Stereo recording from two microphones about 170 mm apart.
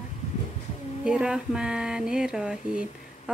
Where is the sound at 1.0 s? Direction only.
5° right (ahead or behind).